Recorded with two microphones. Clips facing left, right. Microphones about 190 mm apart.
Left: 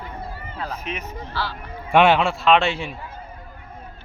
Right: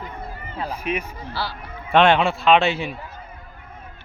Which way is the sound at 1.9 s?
5° left (ahead or behind).